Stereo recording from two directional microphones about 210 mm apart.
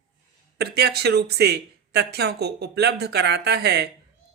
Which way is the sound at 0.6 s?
50° right (ahead or behind).